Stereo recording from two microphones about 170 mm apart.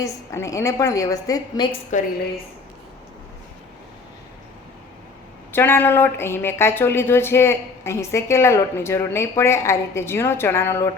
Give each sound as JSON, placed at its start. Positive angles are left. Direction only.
{"t": 0.0, "sound": "a woman's voice", "side_deg": 15}
{"t": 1.9, "sound": "a woman's voice", "side_deg": 45}
{"t": 5.5, "sound": "speech", "side_deg": 10}